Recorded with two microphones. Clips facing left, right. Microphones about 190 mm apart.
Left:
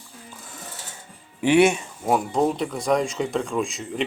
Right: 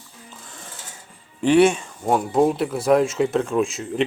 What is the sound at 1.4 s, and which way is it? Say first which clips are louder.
Speech: right 2 dB; 10° left (ahead or behind).